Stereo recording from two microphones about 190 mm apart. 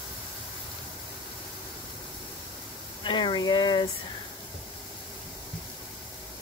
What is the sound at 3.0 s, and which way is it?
Speech, 25° left (ahead or behind).